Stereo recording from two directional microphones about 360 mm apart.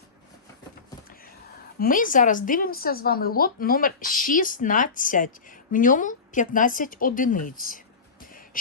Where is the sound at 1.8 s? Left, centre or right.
Left.